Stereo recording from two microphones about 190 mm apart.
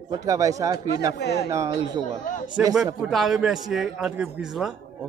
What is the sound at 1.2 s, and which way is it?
Speech, 60° left (ahead or behind).